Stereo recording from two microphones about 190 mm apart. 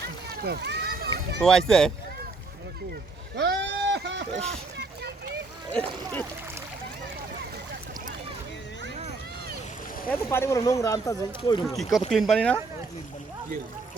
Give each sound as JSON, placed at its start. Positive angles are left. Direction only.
{"t": 0.4, "sound": "a sound", "side_deg": -60}
{"t": 1.4, "sound": "speech", "side_deg": 5}
{"t": 3.3, "sound": "vehicle", "side_deg": -60}
{"t": 4.8, "sound": "a sound", "side_deg": -55}
{"t": 5.7, "sound": "speech", "side_deg": 10}
{"t": 10.1, "sound": "speech", "side_deg": 15}
{"t": 11.8, "sound": "speech", "side_deg": 0}